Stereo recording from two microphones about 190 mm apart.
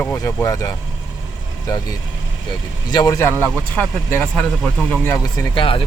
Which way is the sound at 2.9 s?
20° left (ahead or behind).